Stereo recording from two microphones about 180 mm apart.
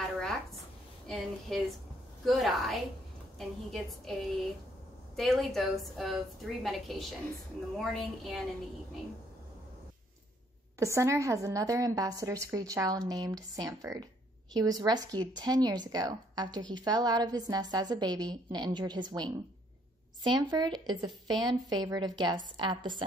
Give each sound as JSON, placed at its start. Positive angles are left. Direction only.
{"t": 1.0, "sound": "a woman's voice", "side_deg": 0}
{"t": 10.8, "sound": "a woman's voice", "side_deg": -15}